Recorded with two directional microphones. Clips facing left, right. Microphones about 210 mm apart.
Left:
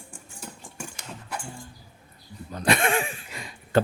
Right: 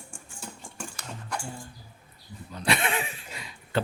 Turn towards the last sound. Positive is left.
turn(degrees=45)  # may be behind; listen again after turning